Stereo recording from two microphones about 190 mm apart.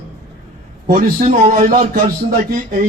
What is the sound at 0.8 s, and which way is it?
A man's voice, 50° right (ahead or behind).